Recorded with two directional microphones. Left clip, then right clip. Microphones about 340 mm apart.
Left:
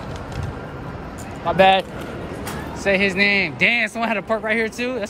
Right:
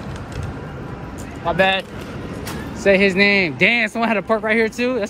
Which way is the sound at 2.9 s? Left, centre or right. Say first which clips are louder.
Right 3 dB; centre.